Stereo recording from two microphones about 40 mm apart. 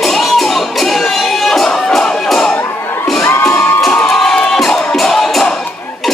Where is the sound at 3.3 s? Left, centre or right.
Left.